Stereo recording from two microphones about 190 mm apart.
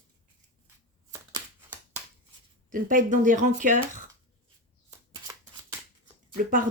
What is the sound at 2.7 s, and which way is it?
Speech, 45° right (ahead or behind).